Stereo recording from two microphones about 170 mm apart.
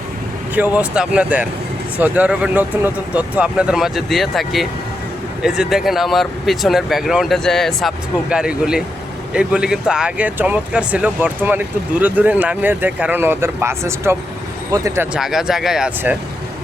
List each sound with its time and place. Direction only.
0.5 s speech: 10° right (ahead or behind)
15.1 s speech: centre (ahead or behind)